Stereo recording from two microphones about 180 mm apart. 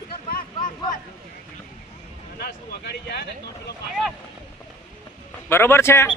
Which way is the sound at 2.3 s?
60° left (ahead or behind).